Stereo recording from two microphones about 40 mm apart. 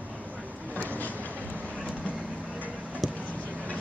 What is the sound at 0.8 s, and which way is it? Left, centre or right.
Vehicle, left.